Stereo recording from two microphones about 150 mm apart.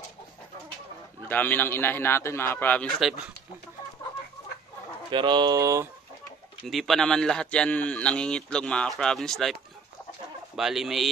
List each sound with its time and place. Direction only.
1.3 s a man's voice: 10° left (ahead or behind)
3.0 s speech: 5° right (ahead or behind)
5.1 s speech: 30° right (ahead or behind)
6.6 s speech: centre (ahead or behind)